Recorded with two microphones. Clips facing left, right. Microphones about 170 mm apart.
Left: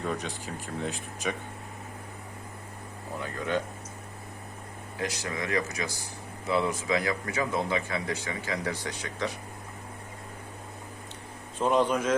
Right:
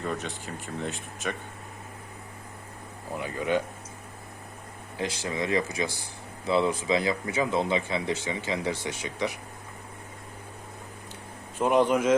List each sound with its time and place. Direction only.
0.0 s speech: centre (ahead or behind)
3.2 s speech: 15° right (ahead or behind)
4.9 s speech: 30° right (ahead or behind)
11.6 s speech: 15° right (ahead or behind)